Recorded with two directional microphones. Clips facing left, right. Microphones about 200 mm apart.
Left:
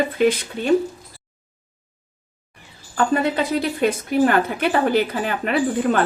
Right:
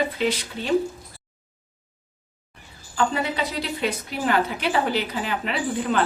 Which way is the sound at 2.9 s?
50° left (ahead or behind).